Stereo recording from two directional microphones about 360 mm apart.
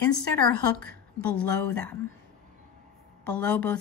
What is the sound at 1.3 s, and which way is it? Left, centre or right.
Speech, left.